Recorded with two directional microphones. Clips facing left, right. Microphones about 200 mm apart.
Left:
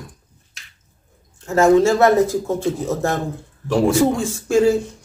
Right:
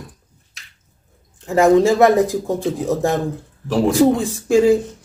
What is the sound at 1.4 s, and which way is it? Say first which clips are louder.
Speech: right 1 dB; 15° right (ahead or behind).